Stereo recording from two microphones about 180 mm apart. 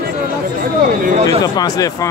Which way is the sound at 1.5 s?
20° left (ahead or behind).